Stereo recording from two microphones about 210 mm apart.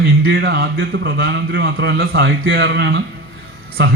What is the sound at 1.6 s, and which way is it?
A man's voice, 45° right (ahead or behind).